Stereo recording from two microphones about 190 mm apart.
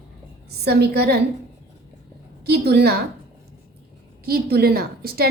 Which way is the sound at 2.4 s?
55° right (ahead or behind).